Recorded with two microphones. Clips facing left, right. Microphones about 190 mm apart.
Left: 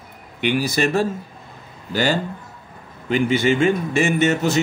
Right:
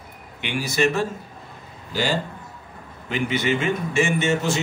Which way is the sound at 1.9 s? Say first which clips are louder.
Left 4 dB; 60° left (ahead or behind).